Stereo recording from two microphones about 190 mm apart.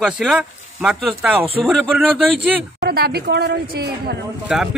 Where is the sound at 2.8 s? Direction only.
55° right (ahead or behind).